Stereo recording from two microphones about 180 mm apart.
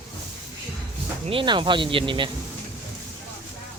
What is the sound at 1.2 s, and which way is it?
Speech, 30° right (ahead or behind).